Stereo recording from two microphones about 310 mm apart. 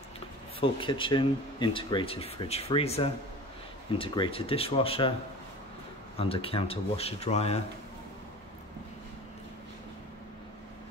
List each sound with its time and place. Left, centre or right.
0.6 s speech: centre
6.1 s speech: centre